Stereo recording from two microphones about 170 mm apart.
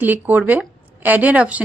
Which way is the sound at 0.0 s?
10° right (ahead or behind).